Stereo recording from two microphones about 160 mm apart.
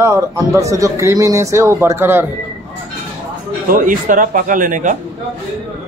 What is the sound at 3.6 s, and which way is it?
Speech, 55° right (ahead or behind).